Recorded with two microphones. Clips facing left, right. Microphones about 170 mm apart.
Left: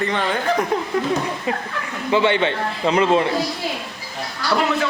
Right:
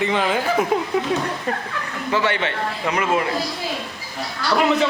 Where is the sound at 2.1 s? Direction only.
20° left (ahead or behind).